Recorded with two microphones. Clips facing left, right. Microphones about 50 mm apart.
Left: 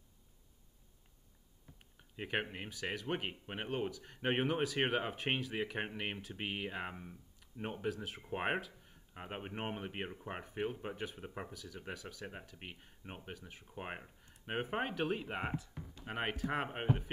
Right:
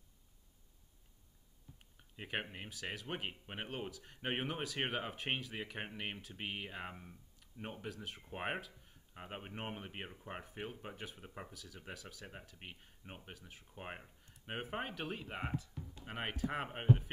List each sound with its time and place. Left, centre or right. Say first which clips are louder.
2.1 s speech: left 4 dB; centre
5.1 s speech: left 4 dB; centre
8.2 s speech: left 4 dB; centre
8.5 s a sound: left 5 dB; centre
9.1 s speech: left 3 dB; centre
11.5 s speech: left 4 dB; centre
13.7 s speech: left 3 dB; centre
16.1 s speech: left 3 dB; centre